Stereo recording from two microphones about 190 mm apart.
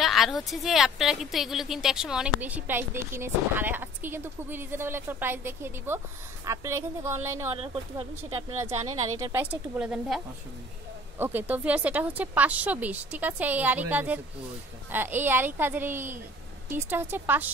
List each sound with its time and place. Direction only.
0.0 s a woman's voice: centre (ahead or behind)